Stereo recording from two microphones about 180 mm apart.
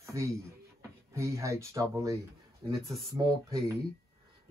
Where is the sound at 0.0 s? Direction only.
15° right (ahead or behind).